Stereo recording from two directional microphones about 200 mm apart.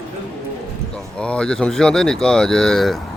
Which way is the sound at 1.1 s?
5° left (ahead or behind).